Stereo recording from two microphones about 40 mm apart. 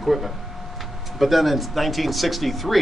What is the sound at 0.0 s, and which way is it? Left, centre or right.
Speech, centre.